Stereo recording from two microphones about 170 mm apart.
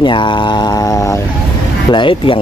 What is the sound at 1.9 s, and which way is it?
Speech, 30° left (ahead or behind).